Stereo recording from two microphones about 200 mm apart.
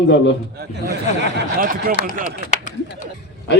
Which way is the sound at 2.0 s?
45° right (ahead or behind).